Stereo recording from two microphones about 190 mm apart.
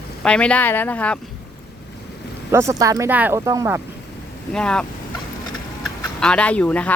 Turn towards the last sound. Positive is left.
turn(degrees=5)  # may be behind; listen again after turning